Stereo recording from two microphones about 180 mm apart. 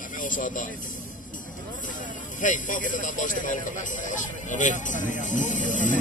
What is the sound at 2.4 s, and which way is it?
Speech, 45° left (ahead or behind).